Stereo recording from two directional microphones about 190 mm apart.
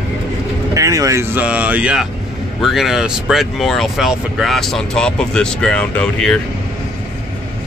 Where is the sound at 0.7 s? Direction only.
15° right (ahead or behind); by 6.4 s 5° left (ahead or behind).